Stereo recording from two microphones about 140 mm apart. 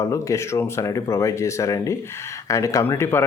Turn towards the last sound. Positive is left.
turn(degrees=15)  # may be behind; listen again after turning